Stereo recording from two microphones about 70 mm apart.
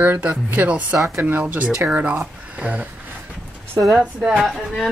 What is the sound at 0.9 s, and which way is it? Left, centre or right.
Speech, right.